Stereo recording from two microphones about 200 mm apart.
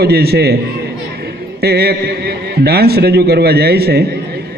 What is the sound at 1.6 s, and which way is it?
A man's voice, 50° right (ahead or behind).